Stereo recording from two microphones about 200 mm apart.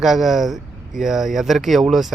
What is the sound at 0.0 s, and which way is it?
Speech, centre (ahead or behind).